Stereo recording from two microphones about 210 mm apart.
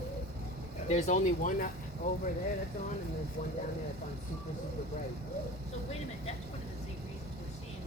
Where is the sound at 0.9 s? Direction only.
35° left (ahead or behind).